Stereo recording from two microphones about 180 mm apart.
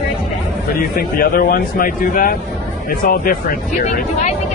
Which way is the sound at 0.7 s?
55° left (ahead or behind).